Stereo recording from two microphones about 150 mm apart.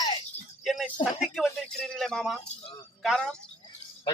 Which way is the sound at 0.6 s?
Centre (ahead or behind).